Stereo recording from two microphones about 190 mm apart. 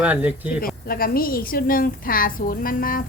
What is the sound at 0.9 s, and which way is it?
A woman's voice, 50° left (ahead or behind).